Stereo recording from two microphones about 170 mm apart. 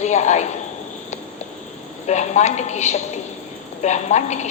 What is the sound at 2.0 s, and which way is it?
A woman's voice, 40° left (ahead or behind).